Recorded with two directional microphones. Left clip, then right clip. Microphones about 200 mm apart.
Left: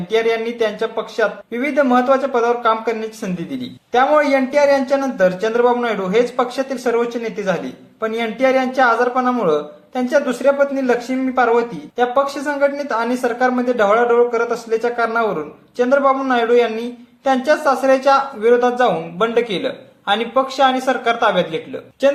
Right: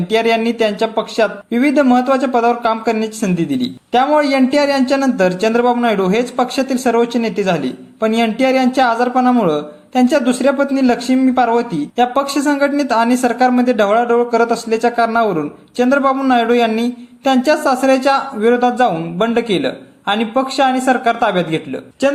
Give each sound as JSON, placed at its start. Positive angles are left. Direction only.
{"t": 0.1, "sound": "speech", "side_deg": -25}